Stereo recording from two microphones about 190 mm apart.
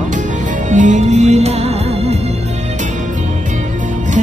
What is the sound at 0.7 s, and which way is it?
Music, 40° right (ahead or behind).